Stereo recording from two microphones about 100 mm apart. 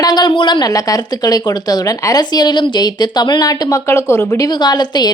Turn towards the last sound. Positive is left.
turn(degrees=45)  # may be behind; listen again after turning